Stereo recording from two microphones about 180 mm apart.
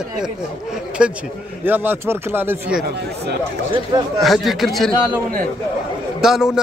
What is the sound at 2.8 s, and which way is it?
Speech, 65° right (ahead or behind).